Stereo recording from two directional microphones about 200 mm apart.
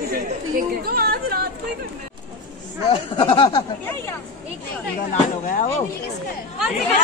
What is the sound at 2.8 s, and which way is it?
Speech, 25° left (ahead or behind).